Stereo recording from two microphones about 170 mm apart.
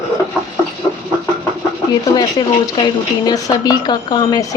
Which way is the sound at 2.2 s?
25° left (ahead or behind).